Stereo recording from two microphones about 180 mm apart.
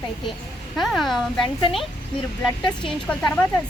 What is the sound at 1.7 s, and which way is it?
Speech, 30° left (ahead or behind).